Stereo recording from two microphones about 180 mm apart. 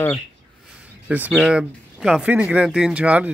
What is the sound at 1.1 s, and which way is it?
Speech, 5° right (ahead or behind).